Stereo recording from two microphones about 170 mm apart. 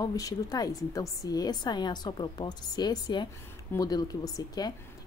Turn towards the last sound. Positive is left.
turn(degrees=25)  # may be behind; listen again after turning